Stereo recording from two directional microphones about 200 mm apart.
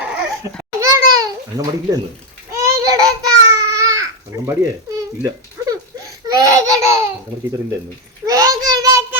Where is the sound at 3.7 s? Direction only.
15° right (ahead or behind).